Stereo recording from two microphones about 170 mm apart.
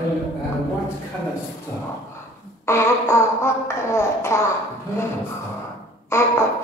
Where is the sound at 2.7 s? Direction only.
15° left (ahead or behind).